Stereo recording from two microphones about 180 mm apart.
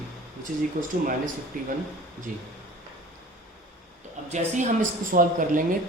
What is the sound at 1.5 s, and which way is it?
Speech, 50° right (ahead or behind).